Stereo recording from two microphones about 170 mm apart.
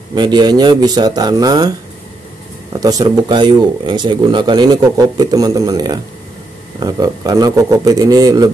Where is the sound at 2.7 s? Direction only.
20° right (ahead or behind).